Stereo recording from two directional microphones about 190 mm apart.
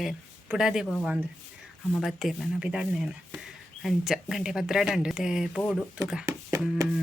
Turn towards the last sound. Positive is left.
turn(degrees=-15)  # may be behind; listen again after turning